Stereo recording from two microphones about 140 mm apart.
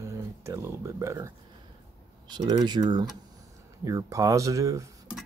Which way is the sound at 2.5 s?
30° right (ahead or behind).